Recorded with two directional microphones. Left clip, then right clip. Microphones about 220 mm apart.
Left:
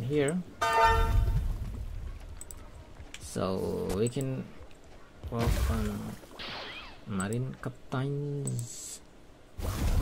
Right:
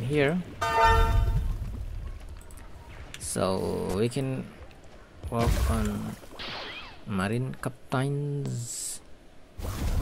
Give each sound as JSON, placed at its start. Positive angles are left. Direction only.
{"t": 0.0, "sound": "speech", "side_deg": -15}
{"t": 0.6, "sound": "music", "side_deg": 0}
{"t": 3.3, "sound": "speech", "side_deg": -15}
{"t": 5.4, "sound": "a sound", "side_deg": 0}
{"t": 7.1, "sound": "speech", "side_deg": -15}
{"t": 9.6, "sound": "whoosh", "side_deg": 0}